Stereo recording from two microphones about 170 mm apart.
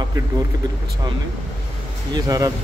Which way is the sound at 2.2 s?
20° right (ahead or behind).